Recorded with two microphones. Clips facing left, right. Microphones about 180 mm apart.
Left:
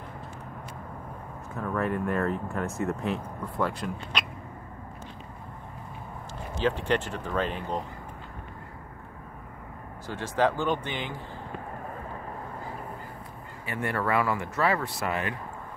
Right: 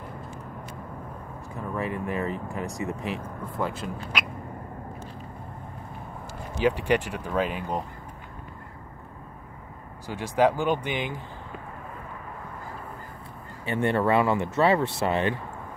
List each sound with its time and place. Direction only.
1.6 s speech: centre (ahead or behind)
6.5 s speech: 10° right (ahead or behind)
10.0 s speech: 10° right (ahead or behind)
13.7 s speech: 25° right (ahead or behind)